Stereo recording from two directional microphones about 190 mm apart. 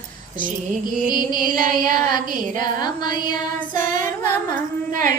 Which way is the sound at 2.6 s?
20° left (ahead or behind).